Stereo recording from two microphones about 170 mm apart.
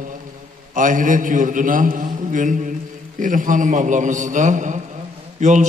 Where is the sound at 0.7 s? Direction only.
50° right (ahead or behind).